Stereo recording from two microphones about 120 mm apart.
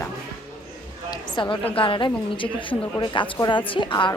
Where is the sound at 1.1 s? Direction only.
40° left (ahead or behind).